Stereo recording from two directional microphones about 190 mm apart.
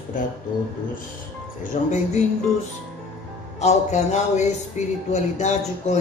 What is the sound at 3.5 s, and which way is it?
A man's voice, 35° left (ahead or behind).